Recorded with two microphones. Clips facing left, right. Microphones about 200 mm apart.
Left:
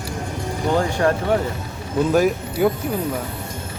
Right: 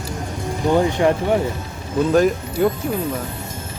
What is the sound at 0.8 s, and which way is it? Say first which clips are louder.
Speech: right 2 dB; 20° right (ahead or behind).